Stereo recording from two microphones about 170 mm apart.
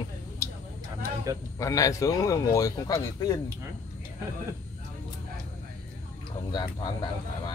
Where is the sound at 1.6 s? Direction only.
20° left (ahead or behind).